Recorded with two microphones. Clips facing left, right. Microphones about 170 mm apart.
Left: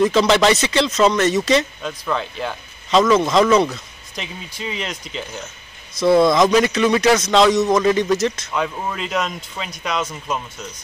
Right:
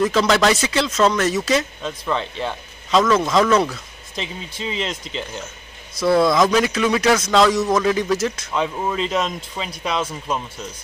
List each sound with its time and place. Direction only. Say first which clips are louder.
0.0 s speech: left 2 dB; centre (ahead or behind)
4.1 s speech: right 2 dB; 25° right (ahead or behind)
5.9 s speech: left 2 dB; centre (ahead or behind)